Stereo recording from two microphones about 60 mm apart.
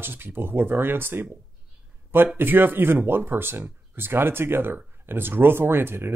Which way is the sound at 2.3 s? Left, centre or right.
Right.